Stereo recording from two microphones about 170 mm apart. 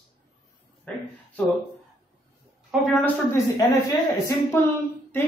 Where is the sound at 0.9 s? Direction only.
10° left (ahead or behind).